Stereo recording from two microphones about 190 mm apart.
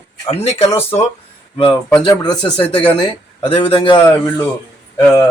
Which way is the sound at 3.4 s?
30° left (ahead or behind).